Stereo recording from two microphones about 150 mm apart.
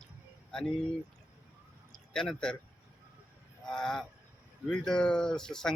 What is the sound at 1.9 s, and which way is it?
Speech, 5° left (ahead or behind).